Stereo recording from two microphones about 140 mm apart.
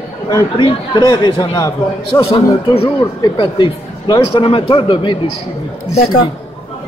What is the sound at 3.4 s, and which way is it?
A man's voice, 35° left (ahead or behind).